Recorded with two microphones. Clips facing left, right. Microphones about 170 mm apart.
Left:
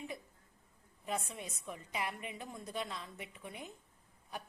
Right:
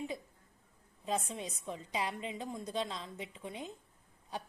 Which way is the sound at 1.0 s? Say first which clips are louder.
Right 4 dB; 20° right (ahead or behind).